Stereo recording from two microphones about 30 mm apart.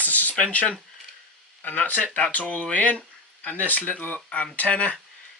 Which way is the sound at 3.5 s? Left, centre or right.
Left.